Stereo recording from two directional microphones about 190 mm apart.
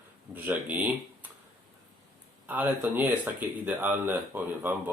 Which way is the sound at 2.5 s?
10° right (ahead or behind).